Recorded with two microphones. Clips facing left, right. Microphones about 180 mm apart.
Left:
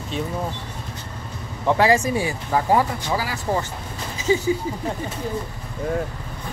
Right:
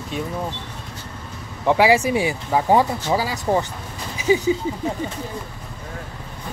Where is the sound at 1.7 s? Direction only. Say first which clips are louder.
Right 2 dB; 10° right (ahead or behind).